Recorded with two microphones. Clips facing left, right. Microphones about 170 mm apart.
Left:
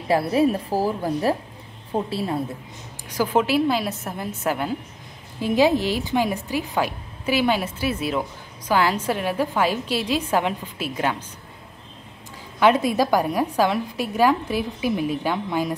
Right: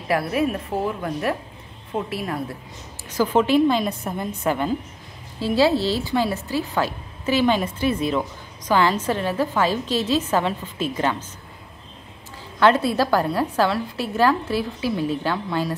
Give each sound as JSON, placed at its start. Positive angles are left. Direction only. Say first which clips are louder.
{"t": 0.1, "sound": "a woman's voice", "louder": "left 3 dB", "side_deg": 30}
{"t": 3.1, "sound": "speech", "louder": "right 2 dB", "side_deg": 10}
{"t": 12.5, "sound": "speech", "louder": "even", "side_deg": 15}